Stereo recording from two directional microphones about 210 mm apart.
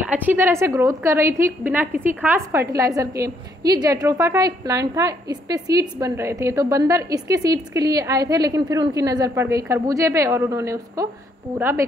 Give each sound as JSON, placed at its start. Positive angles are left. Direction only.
{"t": 0.1, "sound": "a woman's voice", "side_deg": -10}